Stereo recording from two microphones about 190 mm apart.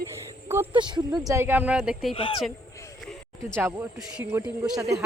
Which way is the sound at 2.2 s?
25° left (ahead or behind).